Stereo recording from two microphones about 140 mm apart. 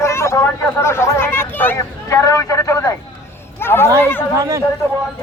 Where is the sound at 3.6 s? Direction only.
15° left (ahead or behind).